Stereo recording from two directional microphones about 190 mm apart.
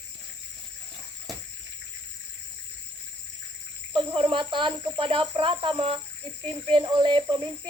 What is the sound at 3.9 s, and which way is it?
Cricket, 25° right (ahead or behind).